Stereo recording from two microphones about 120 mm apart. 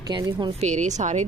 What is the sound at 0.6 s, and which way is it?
Speech, 80° right.